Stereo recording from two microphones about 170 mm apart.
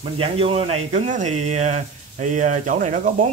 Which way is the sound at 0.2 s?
35° right (ahead or behind).